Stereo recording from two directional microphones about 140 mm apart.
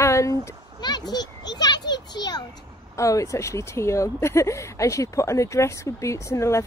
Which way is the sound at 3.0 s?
25° left (ahead or behind).